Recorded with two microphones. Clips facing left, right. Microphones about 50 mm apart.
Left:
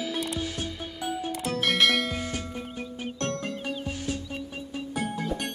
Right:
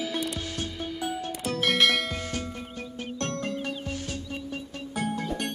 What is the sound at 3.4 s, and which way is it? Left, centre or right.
Music, centre.